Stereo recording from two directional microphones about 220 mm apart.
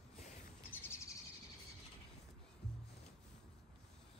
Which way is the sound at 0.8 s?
10° left (ahead or behind).